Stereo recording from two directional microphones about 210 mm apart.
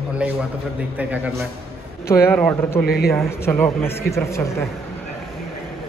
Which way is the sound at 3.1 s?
10° left (ahead or behind).